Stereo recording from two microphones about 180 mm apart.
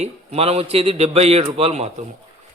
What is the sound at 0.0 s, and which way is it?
A man's voice, 35° right (ahead or behind).